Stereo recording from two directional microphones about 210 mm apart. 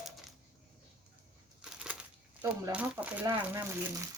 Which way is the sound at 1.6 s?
5° right (ahead or behind).